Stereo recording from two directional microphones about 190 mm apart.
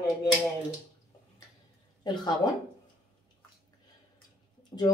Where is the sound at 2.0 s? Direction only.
25° left (ahead or behind).